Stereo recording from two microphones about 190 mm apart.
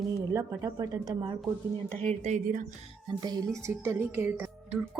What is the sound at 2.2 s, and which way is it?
Speech, 45° right (ahead or behind).